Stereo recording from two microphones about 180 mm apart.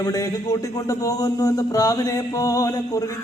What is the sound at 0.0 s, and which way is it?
Speech, 20° left (ahead or behind).